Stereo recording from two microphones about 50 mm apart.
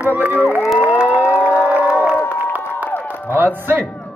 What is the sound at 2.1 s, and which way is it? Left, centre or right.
Crowd, left.